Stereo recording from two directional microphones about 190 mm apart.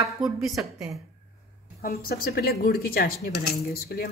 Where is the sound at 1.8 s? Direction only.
50° left (ahead or behind).